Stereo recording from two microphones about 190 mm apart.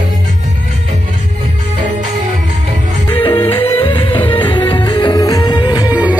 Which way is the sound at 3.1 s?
25° left (ahead or behind).